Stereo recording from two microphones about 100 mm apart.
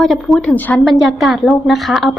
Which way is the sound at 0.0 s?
Centre (ahead or behind).